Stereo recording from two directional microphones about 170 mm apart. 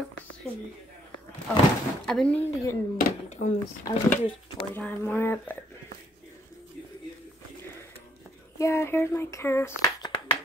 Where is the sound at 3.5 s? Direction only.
15° left (ahead or behind).